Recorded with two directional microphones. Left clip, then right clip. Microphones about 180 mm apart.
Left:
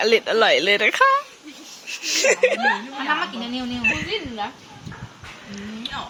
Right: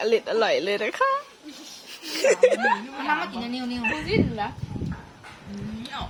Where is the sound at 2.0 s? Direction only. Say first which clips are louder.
Left 1 dB; 25° right (ahead or behind).